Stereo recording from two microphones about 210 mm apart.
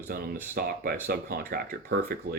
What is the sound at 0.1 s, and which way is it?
Speech, 45° right (ahead or behind).